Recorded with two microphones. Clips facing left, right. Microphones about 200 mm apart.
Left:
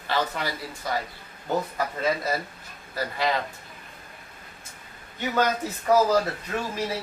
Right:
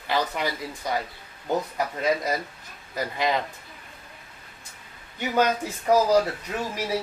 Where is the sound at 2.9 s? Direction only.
15° right (ahead or behind).